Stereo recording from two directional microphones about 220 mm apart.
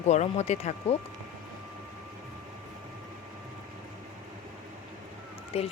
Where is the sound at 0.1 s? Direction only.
30° left (ahead or behind).